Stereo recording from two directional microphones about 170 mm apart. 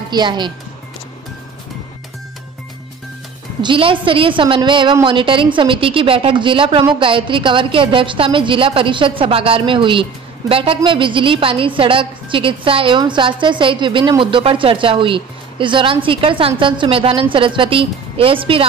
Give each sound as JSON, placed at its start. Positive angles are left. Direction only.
{"t": 0.1, "sound": "speech", "side_deg": -25}
{"t": 3.6, "sound": "a woman's voice", "side_deg": -30}